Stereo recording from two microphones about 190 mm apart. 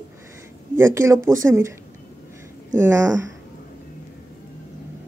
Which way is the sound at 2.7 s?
15° right (ahead or behind).